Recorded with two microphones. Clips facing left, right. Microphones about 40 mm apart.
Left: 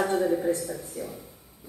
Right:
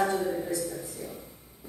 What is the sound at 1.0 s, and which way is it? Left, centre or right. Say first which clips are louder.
Speech: left 4 dB; left.